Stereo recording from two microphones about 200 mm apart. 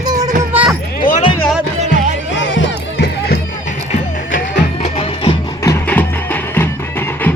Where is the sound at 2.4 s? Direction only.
70° left (ahead or behind).